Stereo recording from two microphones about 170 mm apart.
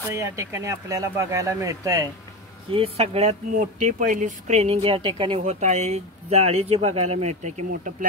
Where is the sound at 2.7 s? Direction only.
35° right (ahead or behind).